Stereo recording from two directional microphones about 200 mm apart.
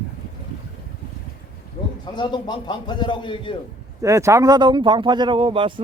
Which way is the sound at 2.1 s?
20° left (ahead or behind).